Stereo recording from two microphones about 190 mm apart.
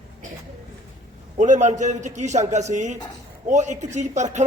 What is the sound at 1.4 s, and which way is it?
A man's voice, 40° right (ahead or behind).